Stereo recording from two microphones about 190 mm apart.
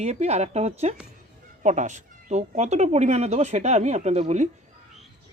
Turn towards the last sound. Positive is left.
turn(degrees=-35)  # may be behind; listen again after turning